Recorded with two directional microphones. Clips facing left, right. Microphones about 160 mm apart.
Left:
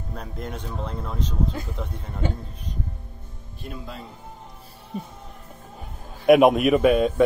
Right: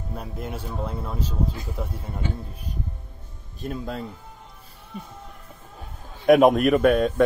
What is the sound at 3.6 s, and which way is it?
Speech, 45° right (ahead or behind).